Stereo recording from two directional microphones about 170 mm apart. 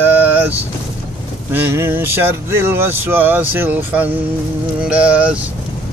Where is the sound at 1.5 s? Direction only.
15° right (ahead or behind).